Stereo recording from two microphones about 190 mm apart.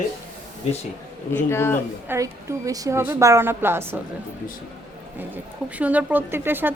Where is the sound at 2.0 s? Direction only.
15° right (ahead or behind).